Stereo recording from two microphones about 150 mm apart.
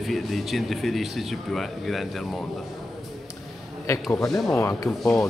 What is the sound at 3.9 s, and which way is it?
A man's voice, 20° left (ahead or behind).